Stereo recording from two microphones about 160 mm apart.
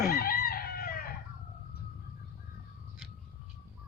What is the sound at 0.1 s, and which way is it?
Chicken, 70° left (ahead or behind).